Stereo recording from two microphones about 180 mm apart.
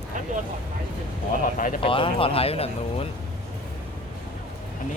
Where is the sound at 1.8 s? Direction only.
30° left (ahead or behind).